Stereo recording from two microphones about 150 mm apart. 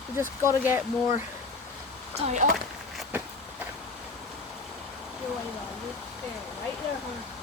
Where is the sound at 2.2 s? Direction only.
55° right (ahead or behind).